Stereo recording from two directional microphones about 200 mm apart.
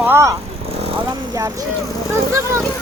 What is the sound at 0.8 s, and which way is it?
Speech, 25° right (ahead or behind).